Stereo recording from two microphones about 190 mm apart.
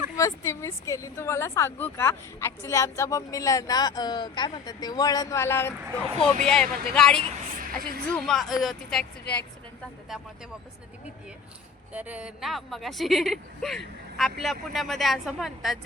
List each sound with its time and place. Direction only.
0.2 s a woman's voice: 15° left (ahead or behind)
7.8 s a woman's voice: 55° right (ahead or behind)
8.0 s a woman's voice: 5° left (ahead or behind)
11.9 s a woman's voice: 10° right (ahead or behind)